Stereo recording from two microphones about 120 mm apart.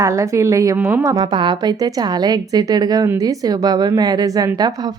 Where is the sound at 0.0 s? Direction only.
25° right (ahead or behind).